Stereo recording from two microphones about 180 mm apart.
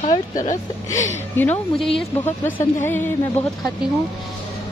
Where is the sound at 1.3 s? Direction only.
10° left (ahead or behind).